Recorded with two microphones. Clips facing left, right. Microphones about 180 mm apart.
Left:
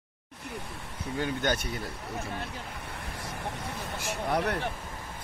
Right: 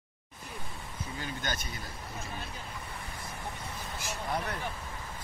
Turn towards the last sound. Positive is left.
turn(degrees=75)  # may be behind; listen again after turning